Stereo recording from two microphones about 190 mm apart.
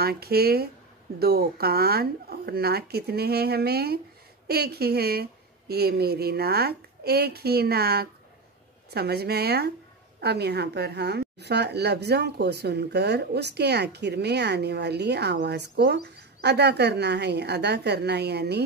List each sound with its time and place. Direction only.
0.0 s speech: 55° right (ahead or behind)